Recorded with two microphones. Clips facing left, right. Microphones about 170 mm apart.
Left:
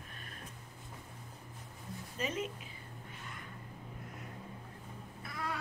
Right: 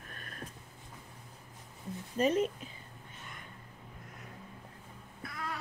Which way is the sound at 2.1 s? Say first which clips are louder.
Right 10 dB; 40° right (ahead or behind).